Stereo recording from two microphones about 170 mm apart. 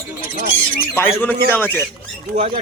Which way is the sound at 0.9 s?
10° left (ahead or behind).